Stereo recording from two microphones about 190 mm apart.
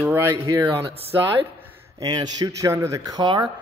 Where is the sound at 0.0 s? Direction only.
15° right (ahead or behind).